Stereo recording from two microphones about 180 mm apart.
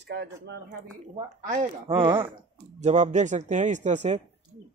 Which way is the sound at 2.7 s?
40° right (ahead or behind).